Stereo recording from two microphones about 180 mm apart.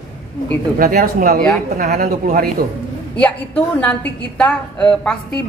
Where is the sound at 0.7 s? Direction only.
55° right (ahead or behind).